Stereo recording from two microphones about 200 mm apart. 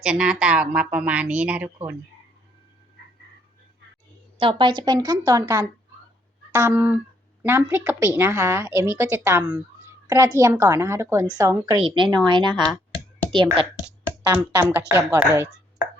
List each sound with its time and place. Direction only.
0.0 s a woman's voice: 5° right (ahead or behind)
4.4 s a woman's voice: 25° right (ahead or behind)
14.3 s a woman's voice: 10° right (ahead or behind)